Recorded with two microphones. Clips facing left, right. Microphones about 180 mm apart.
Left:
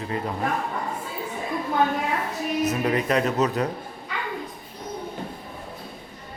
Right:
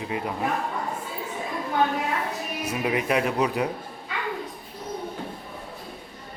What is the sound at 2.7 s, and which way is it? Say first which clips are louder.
Speech: right 1 dB; 10° right (ahead or behind).